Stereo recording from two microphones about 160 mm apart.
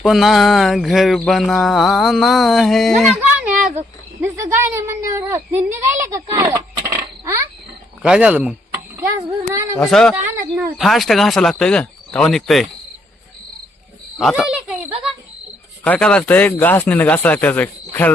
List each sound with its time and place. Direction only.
0.0 s a sound: centre (ahead or behind)
4.2 s a woman's voice: 15° right (ahead or behind)
6.1 s coin: 20° right (ahead or behind)
8.0 s speech: 5° right (ahead or behind)
9.7 s a sound: 5° left (ahead or behind)
14.2 s a woman's voice: centre (ahead or behind)
15.8 s speech: 10° left (ahead or behind)